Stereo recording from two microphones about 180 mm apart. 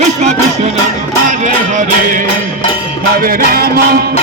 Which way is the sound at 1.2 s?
45° right (ahead or behind).